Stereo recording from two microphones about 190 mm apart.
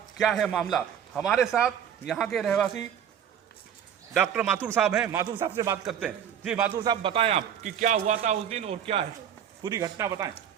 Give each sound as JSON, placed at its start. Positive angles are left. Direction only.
{"t": 0.2, "sound": "a man's voice", "side_deg": 0}
{"t": 4.1, "sound": "a man's voice", "side_deg": 0}
{"t": 5.8, "sound": "a man's voice", "side_deg": -5}
{"t": 6.8, "sound": "a man's voice", "side_deg": -25}
{"t": 9.6, "sound": "a man's voice", "side_deg": -15}